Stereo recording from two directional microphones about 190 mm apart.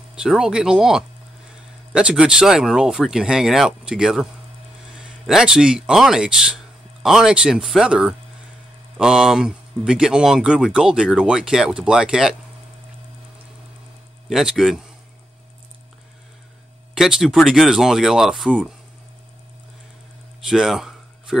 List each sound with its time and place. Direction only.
0.1 s speech: 5° right (ahead or behind)
14.3 s speech: centre (ahead or behind)
16.9 s speech: 5° right (ahead or behind)
20.4 s a sound: centre (ahead or behind)